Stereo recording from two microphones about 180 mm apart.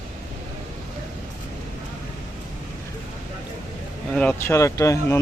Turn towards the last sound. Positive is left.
turn(degrees=15)  # may be behind; listen again after turning